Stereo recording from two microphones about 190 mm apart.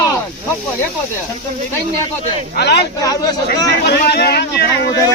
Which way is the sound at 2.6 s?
60° left (ahead or behind).